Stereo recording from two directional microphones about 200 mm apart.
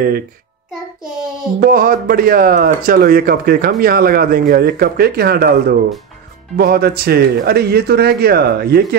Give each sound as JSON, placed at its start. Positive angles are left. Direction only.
{"t": 1.6, "sound": "speech", "side_deg": -45}